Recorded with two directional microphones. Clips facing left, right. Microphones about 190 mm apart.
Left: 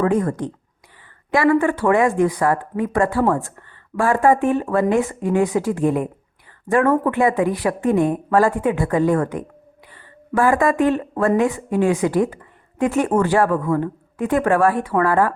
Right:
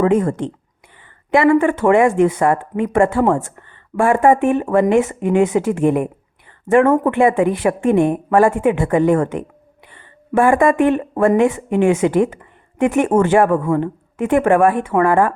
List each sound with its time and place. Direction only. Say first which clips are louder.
0.0 s speech: right 3 dB; 25° right (ahead or behind)